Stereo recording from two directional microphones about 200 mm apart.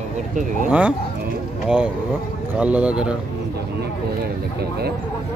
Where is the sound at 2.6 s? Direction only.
5° right (ahead or behind).